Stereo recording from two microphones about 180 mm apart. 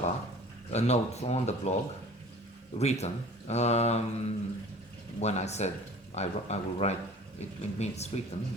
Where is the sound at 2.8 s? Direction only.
35° left (ahead or behind).